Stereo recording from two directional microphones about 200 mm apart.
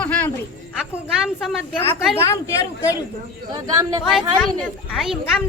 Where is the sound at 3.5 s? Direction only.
15° right (ahead or behind).